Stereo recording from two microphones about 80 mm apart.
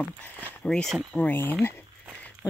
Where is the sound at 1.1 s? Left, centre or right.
Left.